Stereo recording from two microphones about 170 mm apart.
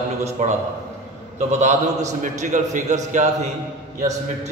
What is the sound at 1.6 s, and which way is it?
A man's voice, 45° right (ahead or behind).